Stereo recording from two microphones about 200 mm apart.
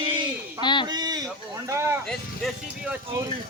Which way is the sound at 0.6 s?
25° left (ahead or behind).